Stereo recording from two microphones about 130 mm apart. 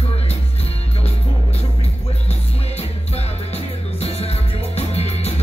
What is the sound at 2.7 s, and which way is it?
Music, 50° left (ahead or behind).